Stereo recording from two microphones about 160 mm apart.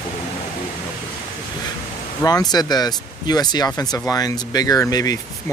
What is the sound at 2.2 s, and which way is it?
Speech, 25° left (ahead or behind).